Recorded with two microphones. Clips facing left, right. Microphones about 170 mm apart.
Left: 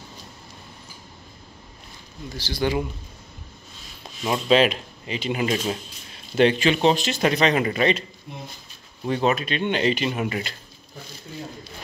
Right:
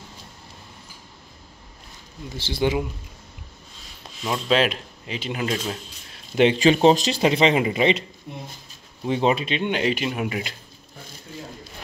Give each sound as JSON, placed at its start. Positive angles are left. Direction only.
{"t": 2.3, "sound": "speech", "side_deg": -25}
{"t": 4.2, "sound": "speech", "side_deg": 5}
{"t": 6.5, "sound": "speech", "side_deg": -35}
{"t": 7.2, "sound": "speech", "side_deg": -25}
{"t": 9.2, "sound": "speech", "side_deg": -25}
{"t": 9.6, "sound": "speech", "side_deg": -10}